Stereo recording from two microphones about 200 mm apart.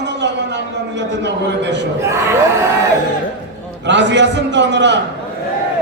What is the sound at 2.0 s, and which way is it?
Speech, 15° right (ahead or behind).